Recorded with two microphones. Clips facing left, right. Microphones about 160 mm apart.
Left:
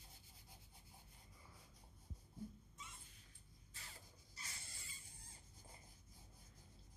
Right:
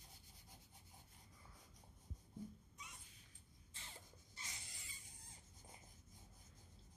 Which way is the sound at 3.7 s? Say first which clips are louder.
Right 2 dB; 25° right (ahead or behind).